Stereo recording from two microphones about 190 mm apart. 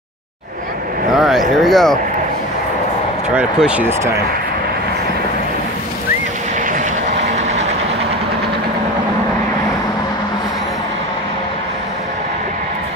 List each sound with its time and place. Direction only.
1.1 s a sound: centre (ahead or behind)
1.6 s speech: centre (ahead or behind)
3.3 s speech: 5° right (ahead or behind)
7.2 s train: 35° right (ahead or behind)